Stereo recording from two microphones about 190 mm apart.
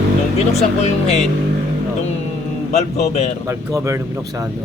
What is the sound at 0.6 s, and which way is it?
Speech, 35° left (ahead or behind).